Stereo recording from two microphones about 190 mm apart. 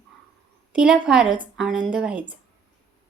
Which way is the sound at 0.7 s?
5° right (ahead or behind).